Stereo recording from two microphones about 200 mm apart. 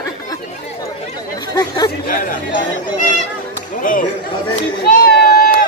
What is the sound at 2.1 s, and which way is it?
Speech, 45° left (ahead or behind).